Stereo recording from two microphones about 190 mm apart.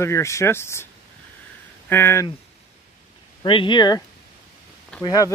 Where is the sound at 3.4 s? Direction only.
25° left (ahead or behind).